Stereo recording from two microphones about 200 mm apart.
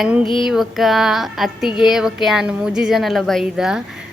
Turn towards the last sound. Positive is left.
turn(degrees=-5)  # may be behind; listen again after turning